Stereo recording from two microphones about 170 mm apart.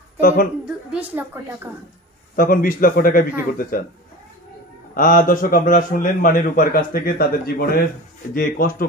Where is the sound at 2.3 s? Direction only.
55° left (ahead or behind).